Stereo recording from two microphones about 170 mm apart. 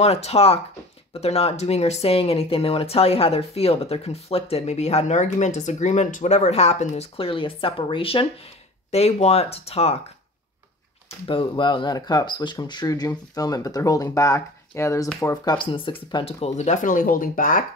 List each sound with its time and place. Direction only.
0.0 s speech: 40° left (ahead or behind)
11.2 s speech: 30° left (ahead or behind); by 17.6 s 50° left (ahead or behind)